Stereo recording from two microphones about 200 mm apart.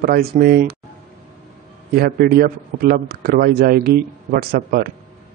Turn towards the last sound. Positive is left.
turn(degrees=-45)  # may be behind; listen again after turning